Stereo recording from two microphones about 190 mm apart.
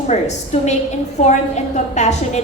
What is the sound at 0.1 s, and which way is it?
A woman's voice, 35° left (ahead or behind).